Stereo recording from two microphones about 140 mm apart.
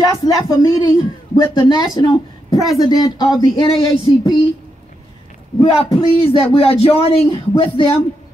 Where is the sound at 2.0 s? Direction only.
25° left (ahead or behind).